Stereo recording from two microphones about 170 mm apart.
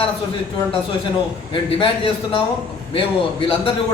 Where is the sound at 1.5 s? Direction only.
30° left (ahead or behind).